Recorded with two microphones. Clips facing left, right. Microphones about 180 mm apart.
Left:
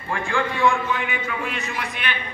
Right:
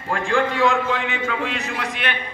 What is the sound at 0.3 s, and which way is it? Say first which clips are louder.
A man's voice: right 2 dB; 70° right (ahead or behind).